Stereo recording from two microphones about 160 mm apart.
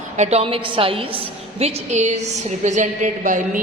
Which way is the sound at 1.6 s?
45° right (ahead or behind).